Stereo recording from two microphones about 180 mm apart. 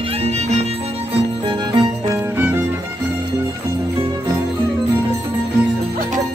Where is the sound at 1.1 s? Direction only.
25° right (ahead or behind).